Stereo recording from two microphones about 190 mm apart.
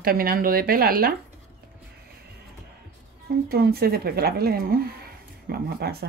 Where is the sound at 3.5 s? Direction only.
55° right (ahead or behind).